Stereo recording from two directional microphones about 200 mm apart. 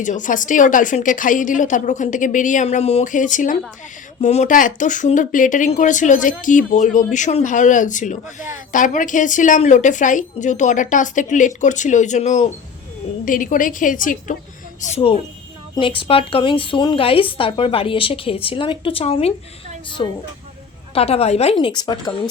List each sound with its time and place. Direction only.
0.0 s speech: 40° left (ahead or behind)
14.8 s a woman's voice: 30° left (ahead or behind)